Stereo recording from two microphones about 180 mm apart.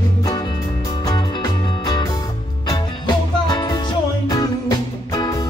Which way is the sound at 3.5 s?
25° left (ahead or behind).